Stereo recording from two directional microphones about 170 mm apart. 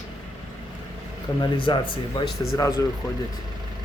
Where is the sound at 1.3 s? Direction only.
25° left (ahead or behind).